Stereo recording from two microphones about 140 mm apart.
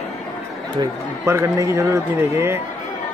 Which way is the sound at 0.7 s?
20° right (ahead or behind).